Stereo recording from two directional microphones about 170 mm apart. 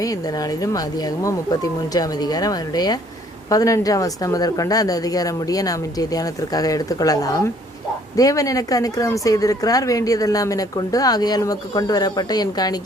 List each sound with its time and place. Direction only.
0.0 s a woman's voice: 20° left (ahead or behind)